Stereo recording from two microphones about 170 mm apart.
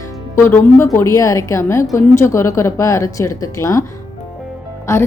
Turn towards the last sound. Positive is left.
turn(degrees=15)  # may be behind; listen again after turning